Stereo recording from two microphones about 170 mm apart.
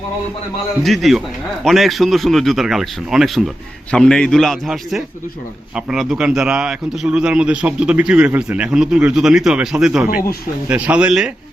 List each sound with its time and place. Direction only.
0.8 s a man's voice: centre (ahead or behind)
10.1 s speech: 60° left (ahead or behind)
10.7 s speech: 10° right (ahead or behind)